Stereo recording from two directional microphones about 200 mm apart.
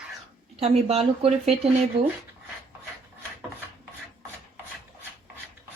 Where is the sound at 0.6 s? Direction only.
30° right (ahead or behind).